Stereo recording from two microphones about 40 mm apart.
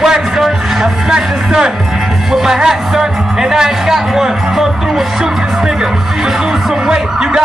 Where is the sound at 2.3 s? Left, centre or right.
Centre.